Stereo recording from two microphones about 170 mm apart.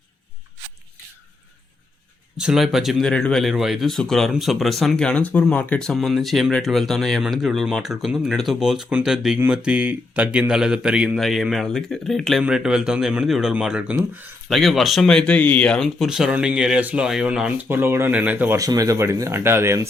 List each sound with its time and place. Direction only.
2.4 s speech: 5° right (ahead or behind)